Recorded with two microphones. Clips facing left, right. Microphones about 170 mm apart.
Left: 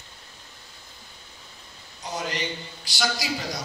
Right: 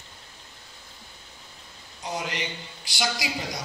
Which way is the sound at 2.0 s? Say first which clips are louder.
Left 1 dB; 20° right (ahead or behind).